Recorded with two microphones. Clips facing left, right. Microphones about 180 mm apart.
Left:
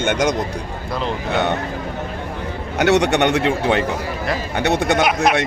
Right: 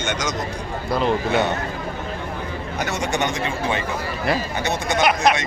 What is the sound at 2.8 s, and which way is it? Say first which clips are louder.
Speech: left 9 dB; 70° left (ahead or behind).